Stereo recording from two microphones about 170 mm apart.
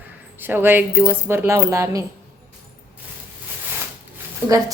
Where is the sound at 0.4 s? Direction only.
10° right (ahead or behind).